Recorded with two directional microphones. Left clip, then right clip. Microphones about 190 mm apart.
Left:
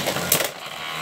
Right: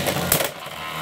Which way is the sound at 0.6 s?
15° right (ahead or behind).